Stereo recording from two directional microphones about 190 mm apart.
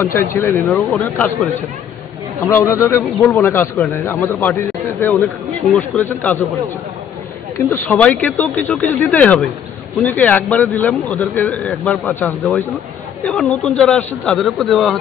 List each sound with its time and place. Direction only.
0.0 s speech: 10° left (ahead or behind)
0.7 s speech: centre (ahead or behind)
7.7 s speech: 10° left (ahead or behind)
12.4 s speech: centre (ahead or behind)